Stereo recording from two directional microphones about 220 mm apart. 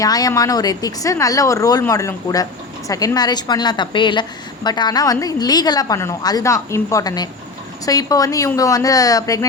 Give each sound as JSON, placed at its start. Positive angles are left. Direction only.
{"t": 0.0, "sound": "speech", "side_deg": 15}